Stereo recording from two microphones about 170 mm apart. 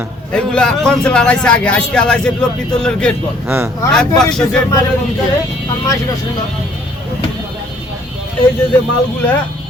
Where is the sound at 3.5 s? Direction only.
15° right (ahead or behind).